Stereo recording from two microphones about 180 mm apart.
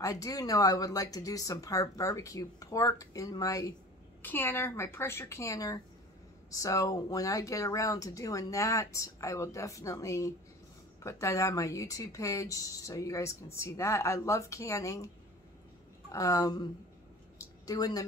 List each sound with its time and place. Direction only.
0.0 s speech: 20° left (ahead or behind)
16.1 s speech: 20° left (ahead or behind)
17.6 s speech: 20° left (ahead or behind)